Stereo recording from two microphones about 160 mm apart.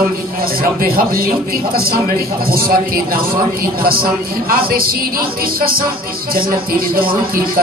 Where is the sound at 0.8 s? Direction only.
65° right (ahead or behind).